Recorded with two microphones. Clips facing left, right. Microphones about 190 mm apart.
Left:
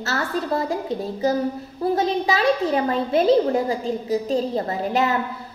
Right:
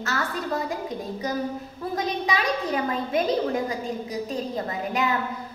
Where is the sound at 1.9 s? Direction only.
30° left (ahead or behind).